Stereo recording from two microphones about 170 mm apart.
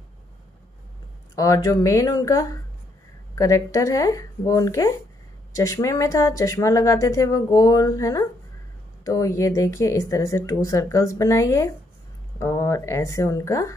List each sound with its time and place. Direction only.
1.3 s speech: 20° left (ahead or behind)